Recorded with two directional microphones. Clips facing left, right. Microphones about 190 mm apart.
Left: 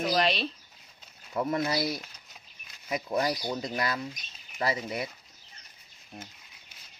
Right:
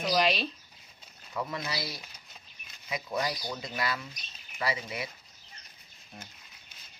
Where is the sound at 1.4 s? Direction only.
50° left (ahead or behind).